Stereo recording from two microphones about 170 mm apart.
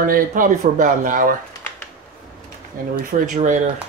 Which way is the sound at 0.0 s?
55° right (ahead or behind).